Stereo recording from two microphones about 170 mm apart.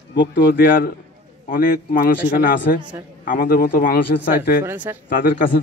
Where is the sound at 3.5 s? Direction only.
75° left (ahead or behind).